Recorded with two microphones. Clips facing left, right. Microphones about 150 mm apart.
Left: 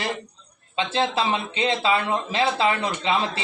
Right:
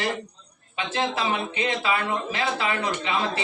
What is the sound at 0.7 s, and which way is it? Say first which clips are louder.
Speech: left 3 dB; 25° left (ahead or behind).